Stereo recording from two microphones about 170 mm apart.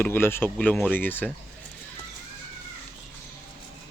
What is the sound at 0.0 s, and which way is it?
Speech, 15° left (ahead or behind).